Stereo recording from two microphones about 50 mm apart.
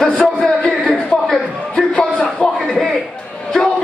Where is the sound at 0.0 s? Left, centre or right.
Centre.